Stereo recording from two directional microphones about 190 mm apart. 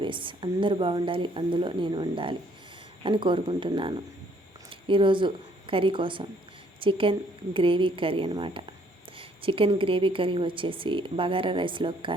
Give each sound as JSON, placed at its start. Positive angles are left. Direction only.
{"t": 0.0, "sound": "a woman's voice", "side_deg": -25}